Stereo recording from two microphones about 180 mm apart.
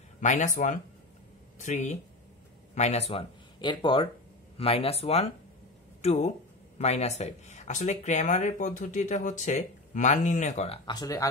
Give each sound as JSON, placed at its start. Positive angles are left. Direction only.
{"t": 0.2, "sound": "speech", "side_deg": 45}
{"t": 1.6, "sound": "speech", "side_deg": 40}
{"t": 10.9, "sound": "speech", "side_deg": 20}